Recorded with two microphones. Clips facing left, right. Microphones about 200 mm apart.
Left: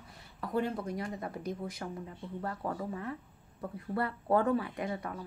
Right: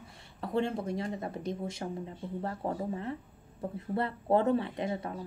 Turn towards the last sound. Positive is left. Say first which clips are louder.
# right 2 dB
turn(degrees=-25)  # may be behind; listen again after turning